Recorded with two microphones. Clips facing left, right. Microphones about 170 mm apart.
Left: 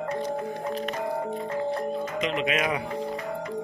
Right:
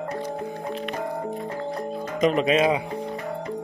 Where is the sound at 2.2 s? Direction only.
40° right (ahead or behind).